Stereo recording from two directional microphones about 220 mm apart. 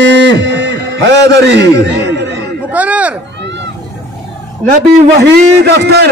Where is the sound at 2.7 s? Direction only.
5° right (ahead or behind).